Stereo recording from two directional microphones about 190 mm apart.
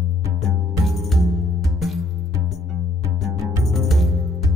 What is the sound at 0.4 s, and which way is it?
Music, centre (ahead or behind).